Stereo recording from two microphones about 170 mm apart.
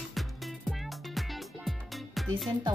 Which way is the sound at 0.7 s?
Centre (ahead or behind).